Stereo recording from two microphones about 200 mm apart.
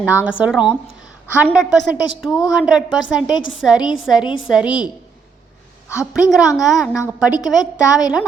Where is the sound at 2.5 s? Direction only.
5° right (ahead or behind).